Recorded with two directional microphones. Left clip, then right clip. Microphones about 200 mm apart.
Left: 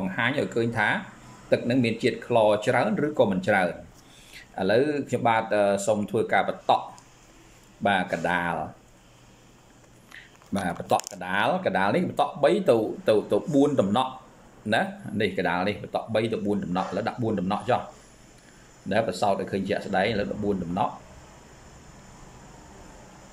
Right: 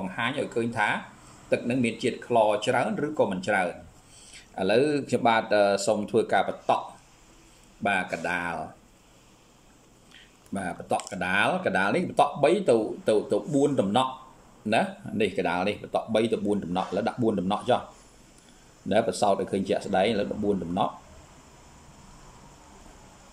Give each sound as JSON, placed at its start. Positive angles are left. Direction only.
{"t": 0.0, "sound": "speech", "side_deg": -5}
{"t": 7.8, "sound": "speech", "side_deg": -5}
{"t": 10.5, "sound": "speech", "side_deg": -10}
{"t": 18.9, "sound": "speech", "side_deg": -15}